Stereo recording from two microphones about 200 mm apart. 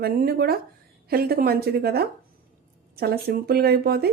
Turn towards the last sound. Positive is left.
turn(degrees=-50)  # may be behind; listen again after turning